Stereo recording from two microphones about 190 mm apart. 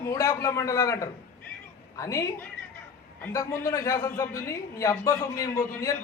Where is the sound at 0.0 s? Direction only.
15° left (ahead or behind).